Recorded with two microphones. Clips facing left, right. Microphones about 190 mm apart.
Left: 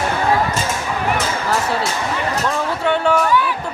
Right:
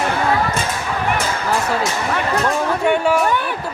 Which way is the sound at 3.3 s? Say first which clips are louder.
Left 2 dB; 55° right (ahead or behind).